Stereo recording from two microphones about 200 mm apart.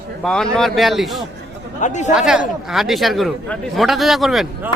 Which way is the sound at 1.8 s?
35° left (ahead or behind).